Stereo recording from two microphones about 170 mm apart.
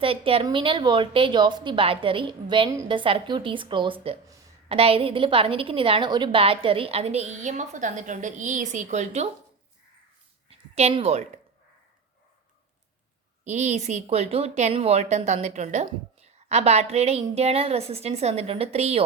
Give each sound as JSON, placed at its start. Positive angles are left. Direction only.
{"t": 0.0, "sound": "a woman's voice", "side_deg": -35}
{"t": 10.5, "sound": "a woman's voice", "side_deg": -35}
{"t": 13.4, "sound": "speech", "side_deg": -40}